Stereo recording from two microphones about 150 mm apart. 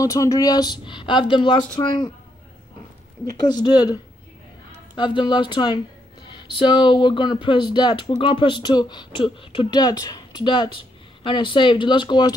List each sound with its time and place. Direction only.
0.0 s speech: 20° left (ahead or behind)
3.3 s speech: 30° left (ahead or behind)